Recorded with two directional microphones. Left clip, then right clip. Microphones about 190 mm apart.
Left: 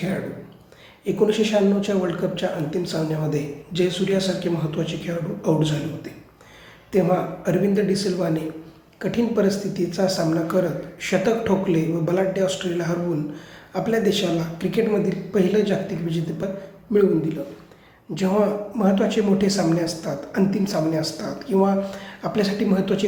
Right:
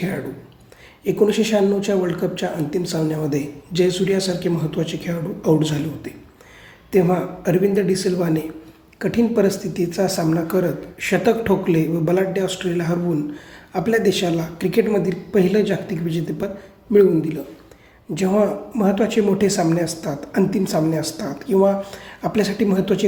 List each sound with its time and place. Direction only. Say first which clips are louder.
1.0 s a woman's voice: right 2 dB; 45° right (ahead or behind)
6.9 s a woman's voice: right 2 dB; 45° right (ahead or behind)